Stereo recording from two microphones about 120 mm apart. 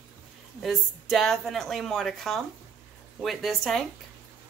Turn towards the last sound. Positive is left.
turn(degrees=0)  # may be behind; listen again after turning